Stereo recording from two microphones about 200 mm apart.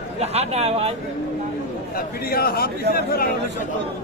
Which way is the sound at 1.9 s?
50° left (ahead or behind).